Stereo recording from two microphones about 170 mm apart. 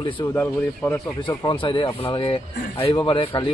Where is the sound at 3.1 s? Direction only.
30° left (ahead or behind).